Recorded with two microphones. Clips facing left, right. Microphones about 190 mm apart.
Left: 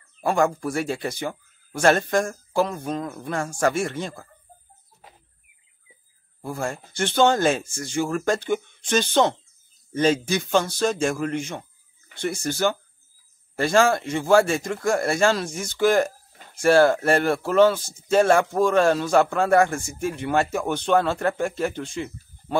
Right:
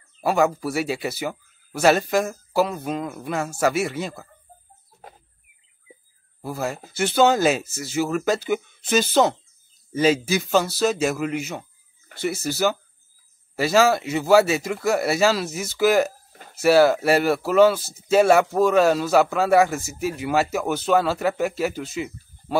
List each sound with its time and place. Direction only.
0.2 s speech: 5° right (ahead or behind)
6.4 s speech: 5° right (ahead or behind)